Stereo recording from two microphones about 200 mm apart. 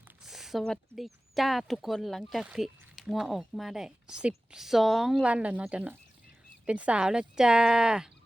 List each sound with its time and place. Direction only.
0.3 s speech: centre (ahead or behind)